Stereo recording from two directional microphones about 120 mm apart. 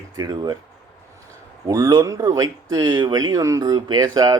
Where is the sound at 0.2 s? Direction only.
35° right (ahead or behind).